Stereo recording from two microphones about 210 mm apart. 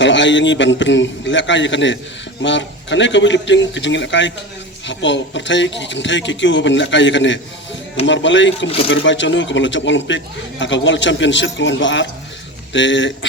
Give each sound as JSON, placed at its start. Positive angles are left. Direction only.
{"t": 0.0, "sound": "speech", "side_deg": 60}